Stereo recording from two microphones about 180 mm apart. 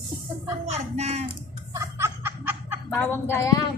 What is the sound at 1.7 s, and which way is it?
Snicker, 15° right (ahead or behind).